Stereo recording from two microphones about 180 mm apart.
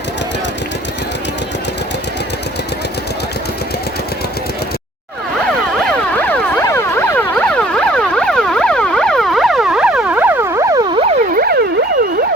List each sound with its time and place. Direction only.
5.8 s emergency vehicle: 10° left (ahead or behind); by 11.1 s 25° right (ahead or behind)
11.3 s siren: 60° right (ahead or behind)